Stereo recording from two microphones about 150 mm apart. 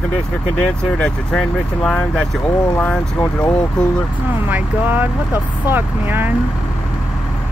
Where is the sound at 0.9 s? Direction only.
5° left (ahead or behind).